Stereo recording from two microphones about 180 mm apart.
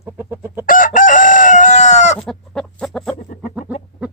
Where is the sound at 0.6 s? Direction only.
50° left (ahead or behind).